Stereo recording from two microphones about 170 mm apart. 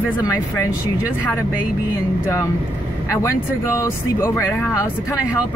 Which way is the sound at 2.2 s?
15° left (ahead or behind).